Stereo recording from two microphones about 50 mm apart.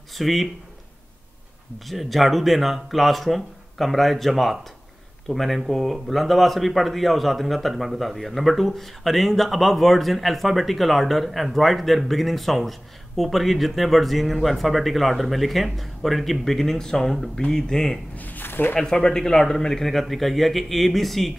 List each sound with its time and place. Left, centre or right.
0.2 s speech: centre
1.9 s speech: centre
18.1 s a sound: left
18.8 s speech: centre